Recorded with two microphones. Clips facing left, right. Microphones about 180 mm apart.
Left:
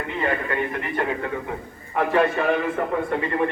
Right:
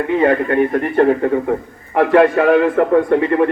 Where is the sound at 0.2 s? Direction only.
55° right (ahead or behind).